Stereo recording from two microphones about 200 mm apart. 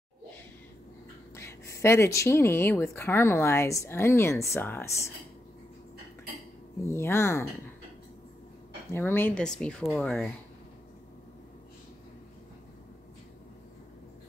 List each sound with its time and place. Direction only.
1.3 s speech: 15° left (ahead or behind)
6.9 s speech: 15° left (ahead or behind)
8.9 s speech: 10° left (ahead or behind)